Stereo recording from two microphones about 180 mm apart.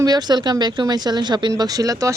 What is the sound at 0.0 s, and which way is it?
Speech, 20° right (ahead or behind).